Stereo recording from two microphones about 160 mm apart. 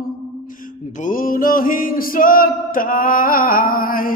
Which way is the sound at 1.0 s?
60° left (ahead or behind).